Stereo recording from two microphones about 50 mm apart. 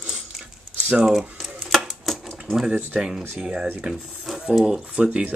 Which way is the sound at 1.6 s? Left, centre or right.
Centre.